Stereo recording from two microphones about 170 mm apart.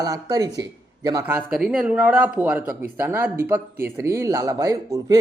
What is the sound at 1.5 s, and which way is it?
Speech, 5° right (ahead or behind).